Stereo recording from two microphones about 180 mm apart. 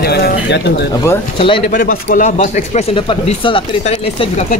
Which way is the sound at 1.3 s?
30° left (ahead or behind).